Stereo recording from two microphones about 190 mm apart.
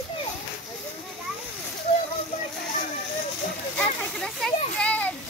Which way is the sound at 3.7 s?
5° left (ahead or behind).